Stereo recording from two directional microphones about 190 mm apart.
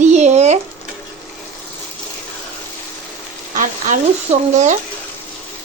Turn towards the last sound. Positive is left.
turn(degrees=-40)  # may be behind; listen again after turning